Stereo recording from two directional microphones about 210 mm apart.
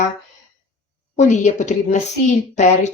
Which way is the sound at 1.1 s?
35° left (ahead or behind).